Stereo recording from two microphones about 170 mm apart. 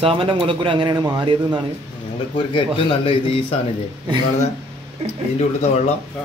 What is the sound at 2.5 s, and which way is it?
Speech, 35° left (ahead or behind).